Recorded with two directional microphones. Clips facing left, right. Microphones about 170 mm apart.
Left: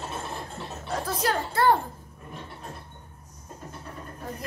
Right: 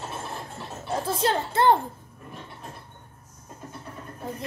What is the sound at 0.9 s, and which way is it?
Speech, 25° right (ahead or behind).